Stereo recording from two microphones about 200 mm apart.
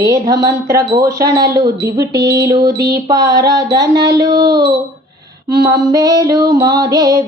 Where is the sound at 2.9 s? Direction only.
20° right (ahead or behind).